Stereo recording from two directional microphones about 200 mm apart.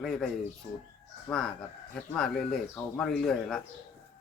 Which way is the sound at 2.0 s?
Centre (ahead or behind).